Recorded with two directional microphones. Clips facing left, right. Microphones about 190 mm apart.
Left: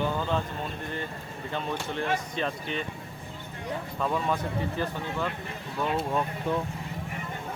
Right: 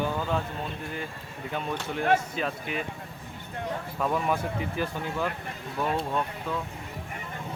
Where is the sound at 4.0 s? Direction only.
5° right (ahead or behind).